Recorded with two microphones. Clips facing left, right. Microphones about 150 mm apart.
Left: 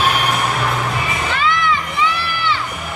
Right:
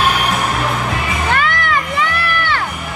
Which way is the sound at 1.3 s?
60° right (ahead or behind).